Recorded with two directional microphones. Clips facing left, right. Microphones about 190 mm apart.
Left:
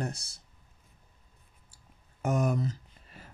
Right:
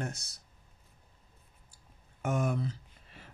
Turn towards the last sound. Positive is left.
turn(degrees=40)  # may be behind; listen again after turning